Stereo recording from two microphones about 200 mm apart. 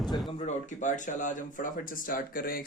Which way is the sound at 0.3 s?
30° left (ahead or behind).